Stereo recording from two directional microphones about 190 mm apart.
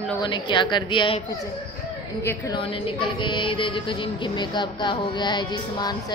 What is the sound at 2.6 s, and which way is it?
Speech, 30° left (ahead or behind).